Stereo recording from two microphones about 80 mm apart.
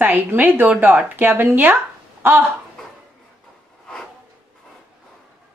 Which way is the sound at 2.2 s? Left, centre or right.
Right.